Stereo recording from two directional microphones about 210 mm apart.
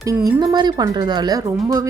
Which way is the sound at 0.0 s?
15° right (ahead or behind).